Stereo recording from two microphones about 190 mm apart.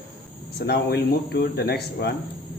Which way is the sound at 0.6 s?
60° left (ahead or behind).